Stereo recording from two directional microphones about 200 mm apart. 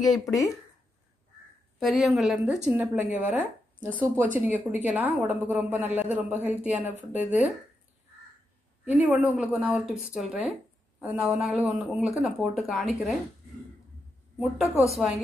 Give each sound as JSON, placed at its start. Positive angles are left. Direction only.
{"t": 0.1, "sound": "speech", "side_deg": 15}
{"t": 1.8, "sound": "a woman's voice", "side_deg": 0}
{"t": 8.8, "sound": "a woman's voice", "side_deg": -10}
{"t": 14.4, "sound": "speech", "side_deg": -5}